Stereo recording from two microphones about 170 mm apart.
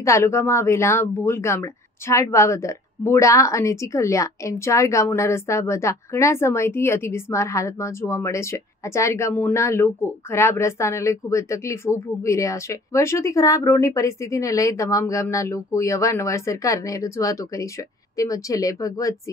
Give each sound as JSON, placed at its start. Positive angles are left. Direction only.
{"t": 0.0, "sound": "speech", "side_deg": 15}